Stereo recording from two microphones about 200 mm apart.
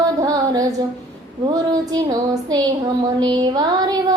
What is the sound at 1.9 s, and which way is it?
Music, 15° right (ahead or behind).